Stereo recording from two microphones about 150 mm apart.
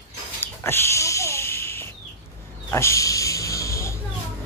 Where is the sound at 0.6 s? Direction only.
15° left (ahead or behind).